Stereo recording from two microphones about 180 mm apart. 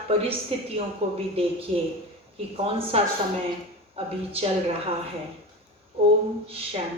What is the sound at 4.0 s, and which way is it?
Speech, 30° right (ahead or behind).